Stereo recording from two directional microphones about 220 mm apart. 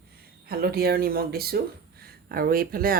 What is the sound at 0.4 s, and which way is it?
Speech, 45° right (ahead or behind).